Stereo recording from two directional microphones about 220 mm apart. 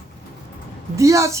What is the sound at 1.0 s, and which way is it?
Speech, 15° right (ahead or behind).